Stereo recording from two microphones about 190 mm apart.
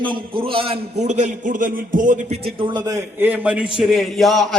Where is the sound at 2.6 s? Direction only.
20° right (ahead or behind).